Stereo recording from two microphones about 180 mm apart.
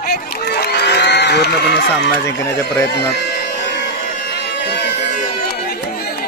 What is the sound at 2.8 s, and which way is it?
Speech, 65° left (ahead or behind).